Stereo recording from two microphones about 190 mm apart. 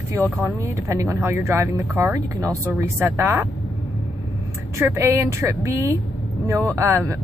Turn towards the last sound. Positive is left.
turn(degrees=-15)  # may be behind; listen again after turning